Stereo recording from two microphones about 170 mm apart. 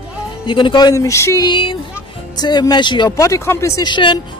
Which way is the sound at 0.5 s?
30° left (ahead or behind).